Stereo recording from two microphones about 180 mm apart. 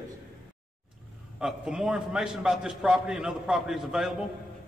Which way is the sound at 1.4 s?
5° right (ahead or behind).